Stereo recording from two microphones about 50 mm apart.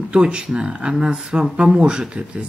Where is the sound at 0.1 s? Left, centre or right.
Centre.